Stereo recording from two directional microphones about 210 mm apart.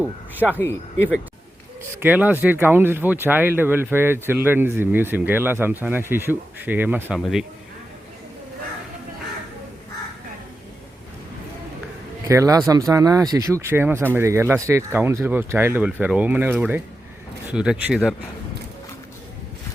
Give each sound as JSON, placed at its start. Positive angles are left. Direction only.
{"t": 0.3, "sound": "speech", "side_deg": -10}
{"t": 0.6, "sound": "speech", "side_deg": 10}
{"t": 2.0, "sound": "speech", "side_deg": -10}
{"t": 12.3, "sound": "speech", "side_deg": -15}